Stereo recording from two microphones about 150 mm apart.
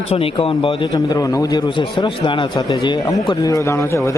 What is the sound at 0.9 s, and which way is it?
Speech, 25° left (ahead or behind).